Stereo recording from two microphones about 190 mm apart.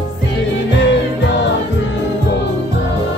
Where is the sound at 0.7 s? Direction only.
70° left (ahead or behind).